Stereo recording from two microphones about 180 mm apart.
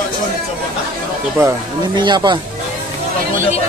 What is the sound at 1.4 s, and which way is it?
Speech, 15° right (ahead or behind).